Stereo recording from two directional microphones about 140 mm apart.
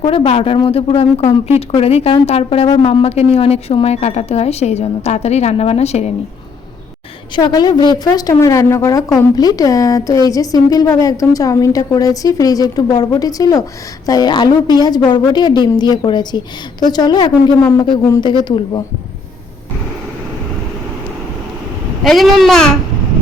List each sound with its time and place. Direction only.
0.0 s a woman's voice: 40° left (ahead or behind)
7.3 s a woman's voice: 30° left (ahead or behind)
22.0 s speech: centre (ahead or behind)